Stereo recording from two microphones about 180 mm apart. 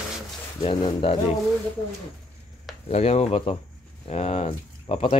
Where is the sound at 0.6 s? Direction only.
30° left (ahead or behind).